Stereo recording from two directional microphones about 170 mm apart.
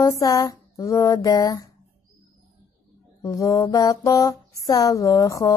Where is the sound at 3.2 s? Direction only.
20° left (ahead or behind).